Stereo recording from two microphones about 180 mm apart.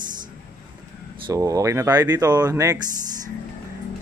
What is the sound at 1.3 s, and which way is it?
Speech, 20° right (ahead or behind).